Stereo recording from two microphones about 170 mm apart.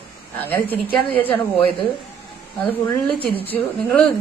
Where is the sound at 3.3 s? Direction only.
10° left (ahead or behind).